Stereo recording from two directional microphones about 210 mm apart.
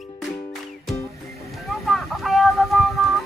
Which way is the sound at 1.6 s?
Centre (ahead or behind).